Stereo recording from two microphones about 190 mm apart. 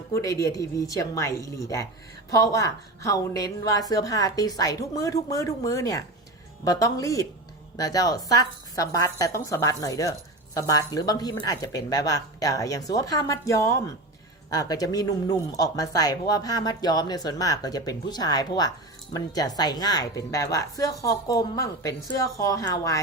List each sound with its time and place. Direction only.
0.1 s a woman's voice: 15° left (ahead or behind)